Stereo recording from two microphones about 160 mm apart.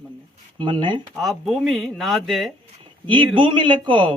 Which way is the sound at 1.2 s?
Centre (ahead or behind).